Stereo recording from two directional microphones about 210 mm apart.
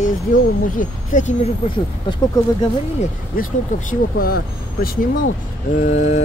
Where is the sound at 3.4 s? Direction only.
45° left (ahead or behind).